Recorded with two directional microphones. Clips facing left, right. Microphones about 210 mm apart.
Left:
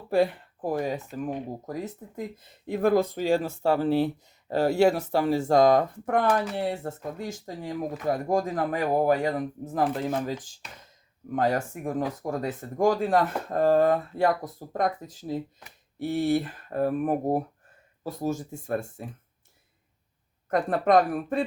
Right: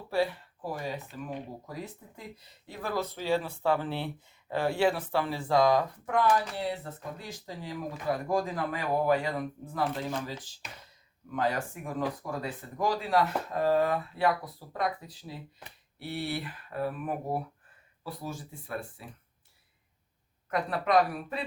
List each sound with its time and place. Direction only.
0.1 s speech: 50° left (ahead or behind)
20.5 s speech: 45° left (ahead or behind)